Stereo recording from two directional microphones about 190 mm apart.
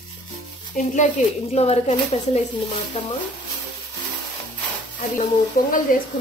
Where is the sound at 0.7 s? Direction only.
40° left (ahead or behind).